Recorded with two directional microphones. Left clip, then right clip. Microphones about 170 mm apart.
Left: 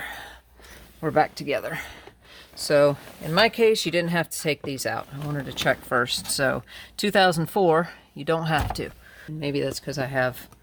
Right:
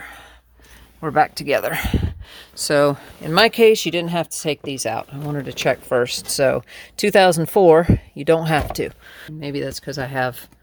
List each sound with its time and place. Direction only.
0.0 s a sound: 20° left (ahead or behind)
1.0 s speech: 20° right (ahead or behind)
5.3 s speech: 35° right (ahead or behind)
9.4 s speech: 15° right (ahead or behind); by 10.3 s 35° right (ahead or behind)